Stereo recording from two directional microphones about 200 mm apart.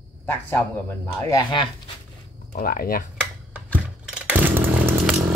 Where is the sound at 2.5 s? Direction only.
45° left (ahead or behind).